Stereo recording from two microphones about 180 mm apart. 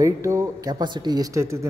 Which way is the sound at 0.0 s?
15° right (ahead or behind).